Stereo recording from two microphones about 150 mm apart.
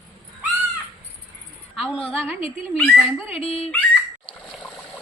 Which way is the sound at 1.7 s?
Centre (ahead or behind).